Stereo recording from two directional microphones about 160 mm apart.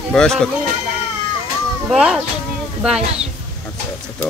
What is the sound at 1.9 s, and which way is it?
Speech, centre (ahead or behind).